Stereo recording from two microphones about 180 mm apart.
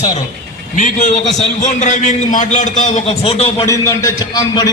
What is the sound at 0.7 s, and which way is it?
A man's voice, 45° left (ahead or behind).